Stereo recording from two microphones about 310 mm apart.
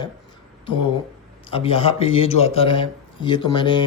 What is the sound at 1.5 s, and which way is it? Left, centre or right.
Speech, centre.